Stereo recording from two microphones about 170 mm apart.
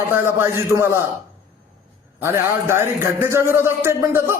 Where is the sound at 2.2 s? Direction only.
15° right (ahead or behind).